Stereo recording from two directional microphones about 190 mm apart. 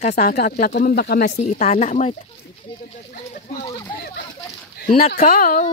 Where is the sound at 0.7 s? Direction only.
55° left (ahead or behind).